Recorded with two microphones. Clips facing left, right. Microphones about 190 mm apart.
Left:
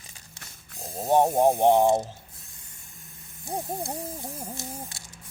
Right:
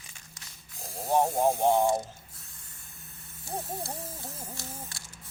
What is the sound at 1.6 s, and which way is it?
Ratchet, 30° left (ahead or behind).